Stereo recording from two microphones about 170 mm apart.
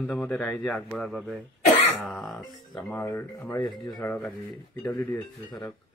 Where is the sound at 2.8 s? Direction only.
10° left (ahead or behind).